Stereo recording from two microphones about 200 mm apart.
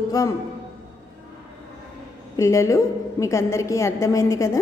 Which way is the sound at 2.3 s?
15° left (ahead or behind).